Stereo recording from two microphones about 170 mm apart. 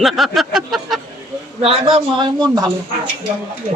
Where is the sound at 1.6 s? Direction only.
35° right (ahead or behind).